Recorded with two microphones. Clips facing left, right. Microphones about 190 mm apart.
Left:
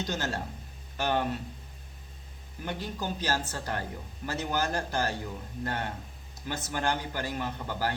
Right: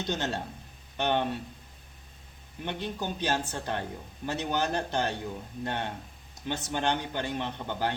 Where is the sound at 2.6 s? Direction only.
20° right (ahead or behind).